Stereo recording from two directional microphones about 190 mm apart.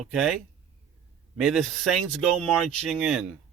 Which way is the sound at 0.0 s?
Centre (ahead or behind).